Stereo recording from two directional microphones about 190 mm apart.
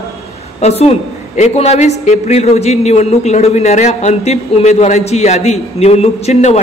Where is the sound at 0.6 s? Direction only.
35° left (ahead or behind).